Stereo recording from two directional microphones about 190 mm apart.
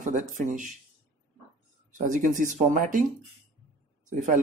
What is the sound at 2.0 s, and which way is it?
Speech, 40° right (ahead or behind).